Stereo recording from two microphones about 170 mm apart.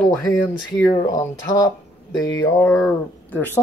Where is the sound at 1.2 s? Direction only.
20° left (ahead or behind).